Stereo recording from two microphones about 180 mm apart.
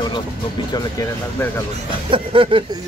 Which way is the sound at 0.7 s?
20° left (ahead or behind).